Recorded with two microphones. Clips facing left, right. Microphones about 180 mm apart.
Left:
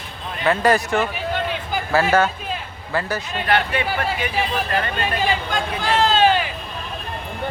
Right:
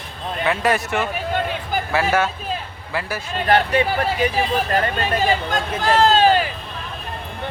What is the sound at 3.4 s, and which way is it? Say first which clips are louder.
Speech: right 5 dB; 40° right (ahead or behind).